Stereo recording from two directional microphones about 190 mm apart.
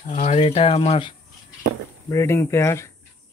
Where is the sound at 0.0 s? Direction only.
40° left (ahead or behind).